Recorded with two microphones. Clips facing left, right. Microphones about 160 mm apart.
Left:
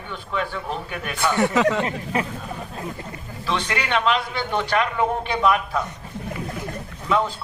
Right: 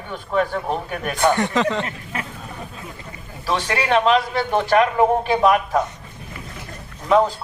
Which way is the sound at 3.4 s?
40° right (ahead or behind).